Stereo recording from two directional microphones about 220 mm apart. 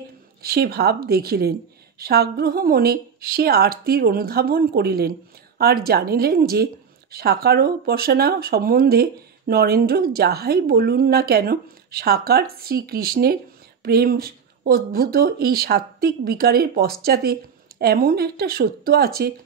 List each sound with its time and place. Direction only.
0.4 s speech: 45° right (ahead or behind)